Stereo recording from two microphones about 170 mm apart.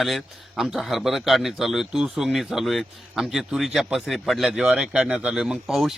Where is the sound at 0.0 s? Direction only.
Centre (ahead or behind).